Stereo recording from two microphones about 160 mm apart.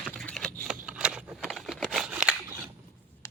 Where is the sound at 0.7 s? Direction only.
5° right (ahead or behind).